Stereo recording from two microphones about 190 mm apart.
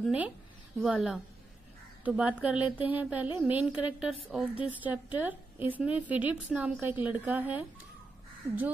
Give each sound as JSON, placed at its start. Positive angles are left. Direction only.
{"t": 0.0, "sound": "a woman's voice", "side_deg": -5}